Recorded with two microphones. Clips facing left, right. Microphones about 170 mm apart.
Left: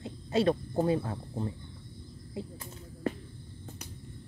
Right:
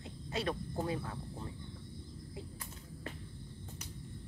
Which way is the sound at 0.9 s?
35° left (ahead or behind).